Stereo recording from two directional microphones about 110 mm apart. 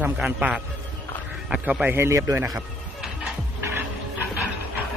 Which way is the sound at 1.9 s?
20° right (ahead or behind).